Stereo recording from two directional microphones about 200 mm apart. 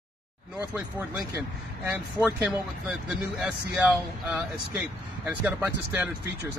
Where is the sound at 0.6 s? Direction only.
10° right (ahead or behind).